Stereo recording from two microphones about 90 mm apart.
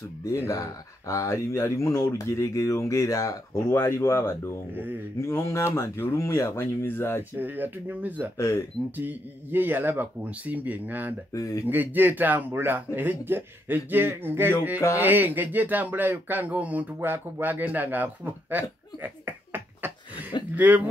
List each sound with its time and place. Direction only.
0.5 s speech: 35° left (ahead or behind)
4.7 s a man's voice: 20° right (ahead or behind)
5.2 s speech: 30° left (ahead or behind)
7.3 s a man's voice: 20° right (ahead or behind)
8.4 s speech: 30° left (ahead or behind)
8.9 s a man's voice: 20° right (ahead or behind)
11.3 s speech: 40° left (ahead or behind)
11.6 s a man's voice: 20° right (ahead or behind)